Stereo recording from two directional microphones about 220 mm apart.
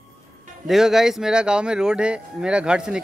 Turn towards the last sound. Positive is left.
turn(degrees=-5)  # may be behind; listen again after turning